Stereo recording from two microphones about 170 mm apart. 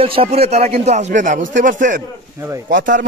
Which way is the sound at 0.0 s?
35° right (ahead or behind).